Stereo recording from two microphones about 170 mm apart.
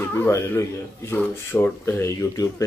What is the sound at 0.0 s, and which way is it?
Speech, 15° left (ahead or behind).